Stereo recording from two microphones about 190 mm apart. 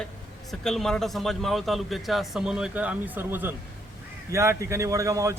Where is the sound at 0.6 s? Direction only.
Centre (ahead or behind).